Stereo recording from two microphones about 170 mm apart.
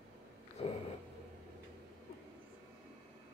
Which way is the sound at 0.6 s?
35° left (ahead or behind).